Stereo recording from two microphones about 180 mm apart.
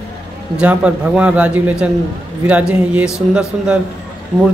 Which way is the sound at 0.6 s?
5° right (ahead or behind).